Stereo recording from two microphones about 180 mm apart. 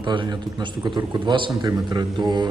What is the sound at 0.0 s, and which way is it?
A man's voice, 25° right (ahead or behind).